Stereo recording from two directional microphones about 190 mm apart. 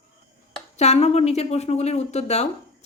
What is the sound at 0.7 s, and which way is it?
Speech, 35° left (ahead or behind).